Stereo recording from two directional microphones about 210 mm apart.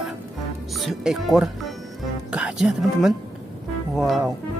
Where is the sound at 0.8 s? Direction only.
Centre (ahead or behind).